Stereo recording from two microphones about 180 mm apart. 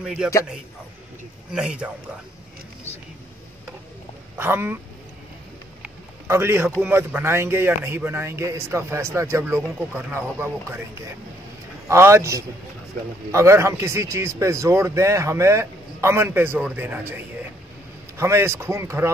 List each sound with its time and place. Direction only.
0.0 s speech: 5° right (ahead or behind)
1.5 s speech: 5° right (ahead or behind)
4.4 s speech: 10° right (ahead or behind)
5.8 s a sound: 15° right (ahead or behind)
6.8 s speech: 10° right (ahead or behind)
11.9 s speech: 15° right (ahead or behind)